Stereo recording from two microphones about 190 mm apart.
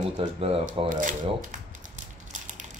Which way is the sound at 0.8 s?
40° right (ahead or behind).